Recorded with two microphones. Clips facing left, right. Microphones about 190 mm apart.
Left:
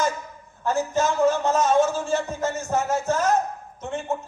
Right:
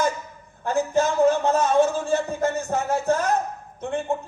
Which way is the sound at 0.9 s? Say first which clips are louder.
Right 2 dB; 55° right (ahead or behind).